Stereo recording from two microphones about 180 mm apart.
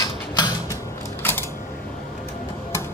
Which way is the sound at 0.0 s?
20° left (ahead or behind).